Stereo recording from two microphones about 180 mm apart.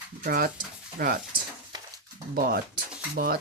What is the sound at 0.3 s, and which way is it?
Speech, 55° right (ahead or behind).